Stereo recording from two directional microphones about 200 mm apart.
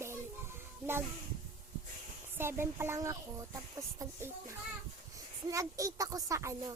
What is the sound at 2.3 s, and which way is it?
Speech, 10° right (ahead or behind).